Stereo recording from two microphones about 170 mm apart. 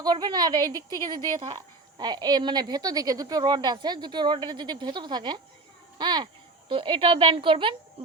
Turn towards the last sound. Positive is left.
turn(degrees=-30)  # may be behind; listen again after turning